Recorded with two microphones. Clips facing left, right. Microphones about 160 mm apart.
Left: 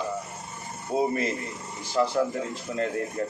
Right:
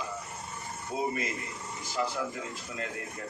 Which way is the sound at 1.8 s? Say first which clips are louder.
Left 8 dB; 40° left (ahead or behind).